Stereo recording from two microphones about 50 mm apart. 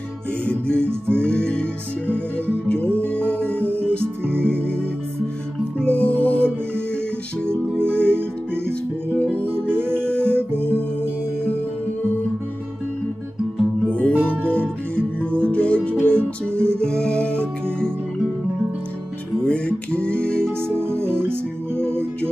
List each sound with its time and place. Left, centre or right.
0.5 s music: left
2.0 s music: right
3.1 s music: left
3.7 s music: right
5.8 s music: left
7.4 s music: right
10.0 s music: left
10.3 s music: right
13.8 s music: left
14.1 s music: right
15.3 s music: left
19.4 s music: left
21.0 s music: right